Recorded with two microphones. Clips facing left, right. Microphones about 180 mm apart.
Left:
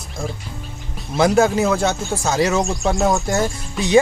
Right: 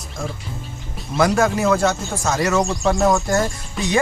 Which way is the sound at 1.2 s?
25° left (ahead or behind).